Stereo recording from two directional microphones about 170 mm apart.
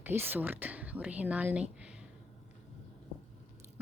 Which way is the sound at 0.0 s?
10° right (ahead or behind).